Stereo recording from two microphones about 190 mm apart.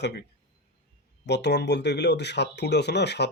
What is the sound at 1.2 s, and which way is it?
Speech, 65° left (ahead or behind).